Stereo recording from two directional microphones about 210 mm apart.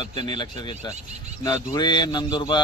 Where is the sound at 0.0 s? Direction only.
20° left (ahead or behind).